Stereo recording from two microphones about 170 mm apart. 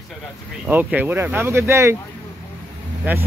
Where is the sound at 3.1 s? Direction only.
10° right (ahead or behind).